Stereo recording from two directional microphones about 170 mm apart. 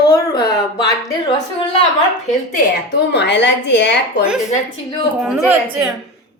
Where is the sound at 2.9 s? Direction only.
85° left.